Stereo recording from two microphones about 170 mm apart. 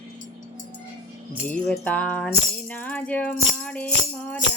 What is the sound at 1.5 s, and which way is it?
Music, 5° left (ahead or behind).